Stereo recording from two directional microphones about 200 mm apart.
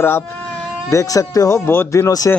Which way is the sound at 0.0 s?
10° left (ahead or behind).